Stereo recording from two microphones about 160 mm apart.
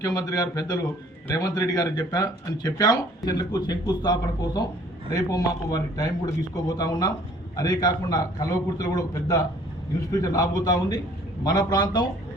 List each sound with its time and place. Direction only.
0.0 s speech: 20° left (ahead or behind)